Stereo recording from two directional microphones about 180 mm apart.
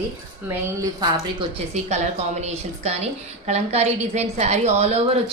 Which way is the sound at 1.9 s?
40° right (ahead or behind).